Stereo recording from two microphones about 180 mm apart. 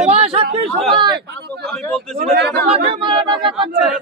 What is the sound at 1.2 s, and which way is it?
Speech, 65° right (ahead or behind).